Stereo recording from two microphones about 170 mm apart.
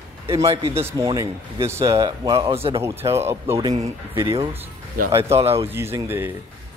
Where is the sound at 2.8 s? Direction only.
15° right (ahead or behind).